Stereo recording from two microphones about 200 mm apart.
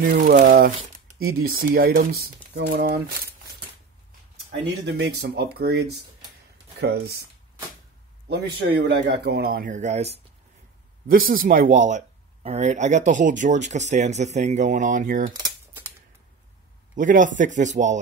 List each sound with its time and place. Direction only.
0.0 s speech: 50° right (ahead or behind)
4.5 s speech: 55° right (ahead or behind)
8.3 s speech: 60° right (ahead or behind); by 10.2 s 35° right (ahead or behind)
11.1 s speech: 45° right (ahead or behind)
16.9 s speech: 40° right (ahead or behind)